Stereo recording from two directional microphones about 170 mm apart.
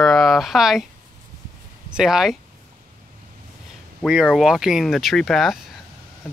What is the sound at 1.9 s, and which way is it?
Speech, 5° right (ahead or behind).